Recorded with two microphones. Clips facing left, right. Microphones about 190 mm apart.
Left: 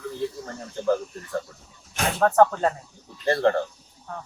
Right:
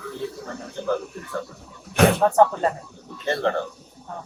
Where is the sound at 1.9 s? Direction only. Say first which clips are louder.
Right 10 dB; 65° right (ahead or behind).